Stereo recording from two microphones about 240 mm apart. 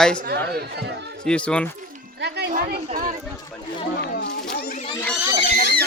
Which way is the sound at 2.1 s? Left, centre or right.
Right.